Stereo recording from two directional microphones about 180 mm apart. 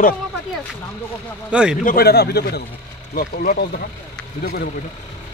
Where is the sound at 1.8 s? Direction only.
60° left (ahead or behind).